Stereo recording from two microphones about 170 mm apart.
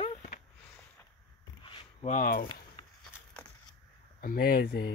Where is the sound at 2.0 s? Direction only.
50° left (ahead or behind).